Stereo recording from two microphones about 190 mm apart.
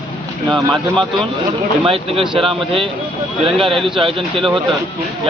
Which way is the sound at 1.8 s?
30° right (ahead or behind).